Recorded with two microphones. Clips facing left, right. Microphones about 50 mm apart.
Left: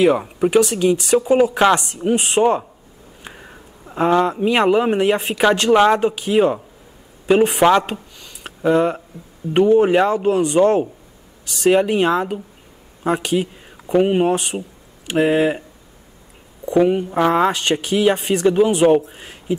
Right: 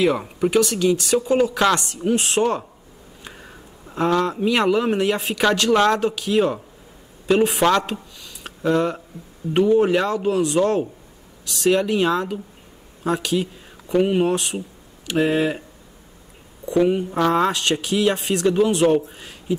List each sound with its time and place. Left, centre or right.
0.0 s speech: centre
1.5 s speech: left
1.8 s speech: centre
3.3 s a sound: centre
4.5 s speech: centre
7.6 s speech: centre
7.9 s a sound: centre
9.6 s speech: centre
11.8 s speech: left
16.7 s speech: centre